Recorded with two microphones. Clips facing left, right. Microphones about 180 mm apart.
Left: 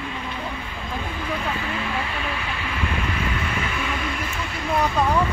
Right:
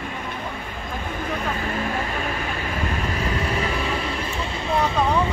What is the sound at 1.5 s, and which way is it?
Vehicle, 45° right (ahead or behind).